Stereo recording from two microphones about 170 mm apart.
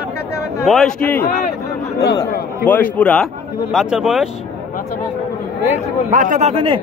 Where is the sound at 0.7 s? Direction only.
5° left (ahead or behind).